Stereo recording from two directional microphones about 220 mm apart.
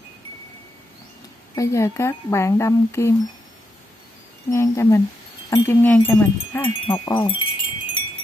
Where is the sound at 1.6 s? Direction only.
15° left (ahead or behind).